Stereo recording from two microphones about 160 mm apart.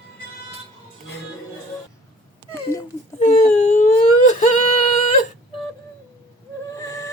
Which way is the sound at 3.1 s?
45° left (ahead or behind).